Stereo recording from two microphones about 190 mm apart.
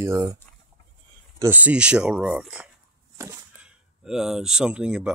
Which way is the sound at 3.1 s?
15° right (ahead or behind).